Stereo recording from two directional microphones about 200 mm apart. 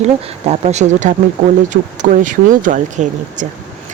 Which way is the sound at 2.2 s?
40° right (ahead or behind).